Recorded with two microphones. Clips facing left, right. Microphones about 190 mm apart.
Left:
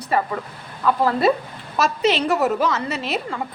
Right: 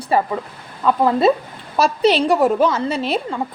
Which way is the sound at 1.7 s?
35° right (ahead or behind).